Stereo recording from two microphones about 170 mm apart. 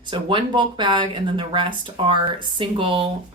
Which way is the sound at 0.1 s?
30° right (ahead or behind).